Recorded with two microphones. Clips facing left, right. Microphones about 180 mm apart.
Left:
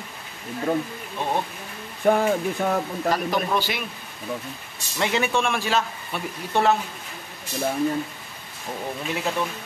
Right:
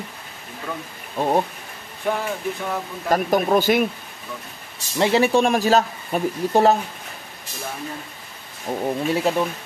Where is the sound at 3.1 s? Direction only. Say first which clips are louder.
Right 6 dB; 45° right (ahead or behind).